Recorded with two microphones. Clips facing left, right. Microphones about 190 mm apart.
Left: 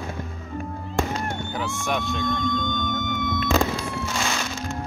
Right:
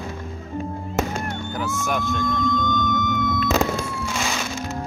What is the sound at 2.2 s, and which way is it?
Music, 25° left (ahead or behind).